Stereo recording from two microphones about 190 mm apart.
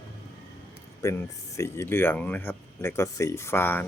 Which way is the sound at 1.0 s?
15° left (ahead or behind).